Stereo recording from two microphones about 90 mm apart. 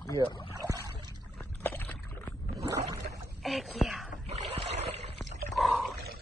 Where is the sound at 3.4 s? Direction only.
Centre (ahead or behind).